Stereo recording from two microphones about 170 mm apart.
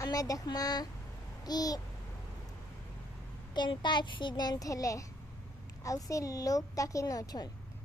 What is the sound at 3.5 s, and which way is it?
A woman's voice, 25° left (ahead or behind).